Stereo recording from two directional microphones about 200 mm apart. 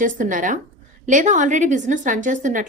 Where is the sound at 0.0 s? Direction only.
40° right (ahead or behind).